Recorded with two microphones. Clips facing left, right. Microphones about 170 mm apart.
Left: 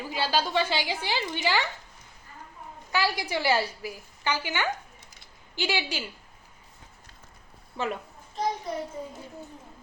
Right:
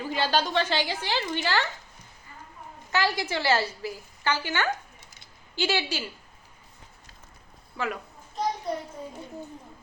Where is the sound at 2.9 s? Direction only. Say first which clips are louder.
Right 1 dB; 10° left (ahead or behind).